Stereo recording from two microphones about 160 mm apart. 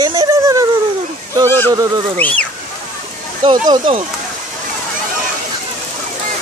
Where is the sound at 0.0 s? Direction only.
25° right (ahead or behind).